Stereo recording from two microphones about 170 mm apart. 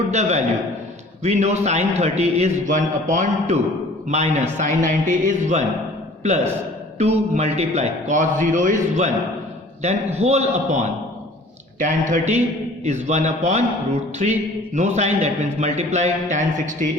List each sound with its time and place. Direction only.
0.1 s a man's voice: 40° right (ahead or behind)
11.8 s a man's voice: 50° right (ahead or behind)